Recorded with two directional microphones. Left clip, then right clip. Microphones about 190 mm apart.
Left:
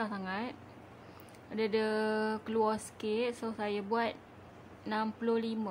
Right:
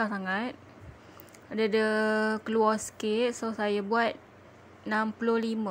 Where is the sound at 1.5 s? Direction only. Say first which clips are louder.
Right 6 dB; 25° right (ahead or behind).